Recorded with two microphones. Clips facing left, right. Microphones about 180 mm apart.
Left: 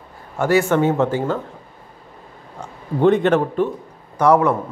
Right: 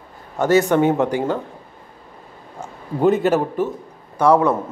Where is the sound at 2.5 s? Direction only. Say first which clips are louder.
Left 1 dB; 5° right (ahead or behind).